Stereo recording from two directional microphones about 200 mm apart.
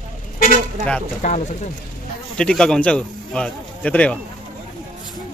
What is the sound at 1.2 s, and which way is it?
Speech, 35° left (ahead or behind).